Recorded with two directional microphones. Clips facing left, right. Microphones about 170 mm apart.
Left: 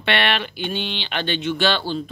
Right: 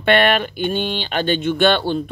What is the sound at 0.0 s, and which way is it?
Speech, 45° right (ahead or behind).